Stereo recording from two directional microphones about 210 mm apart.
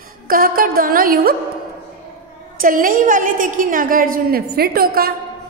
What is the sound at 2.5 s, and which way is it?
A woman's voice, 40° right (ahead or behind).